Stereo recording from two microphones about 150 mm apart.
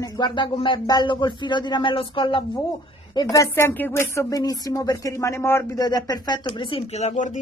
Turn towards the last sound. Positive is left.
turn(degrees=55)  # may be behind; listen again after turning